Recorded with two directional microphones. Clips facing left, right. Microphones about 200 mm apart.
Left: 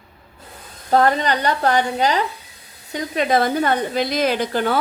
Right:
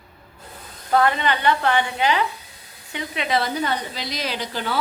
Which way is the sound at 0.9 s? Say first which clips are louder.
Left 3 dB; 40° left (ahead or behind).